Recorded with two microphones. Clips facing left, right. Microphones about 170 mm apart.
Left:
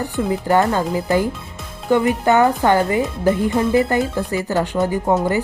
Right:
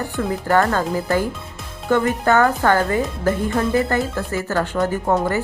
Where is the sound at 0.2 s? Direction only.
15° left (ahead or behind).